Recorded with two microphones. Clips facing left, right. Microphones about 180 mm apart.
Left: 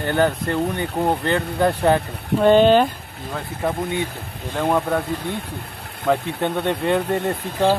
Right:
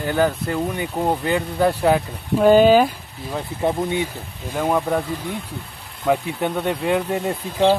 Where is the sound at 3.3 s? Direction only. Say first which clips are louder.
Right 2 dB; 15° right (ahead or behind).